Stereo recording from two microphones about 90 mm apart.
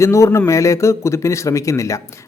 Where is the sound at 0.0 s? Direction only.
35° left (ahead or behind).